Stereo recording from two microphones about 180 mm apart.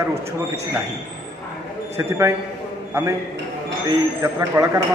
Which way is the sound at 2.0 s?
15° right (ahead or behind).